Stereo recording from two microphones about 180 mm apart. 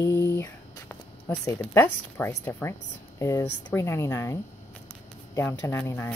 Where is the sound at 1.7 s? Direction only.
10° left (ahead or behind).